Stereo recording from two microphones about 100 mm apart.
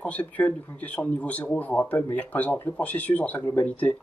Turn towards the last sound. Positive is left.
turn(degrees=15)  # may be behind; listen again after turning